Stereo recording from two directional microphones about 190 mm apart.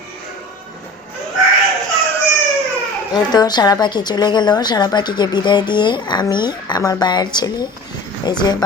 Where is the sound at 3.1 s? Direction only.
20° left (ahead or behind).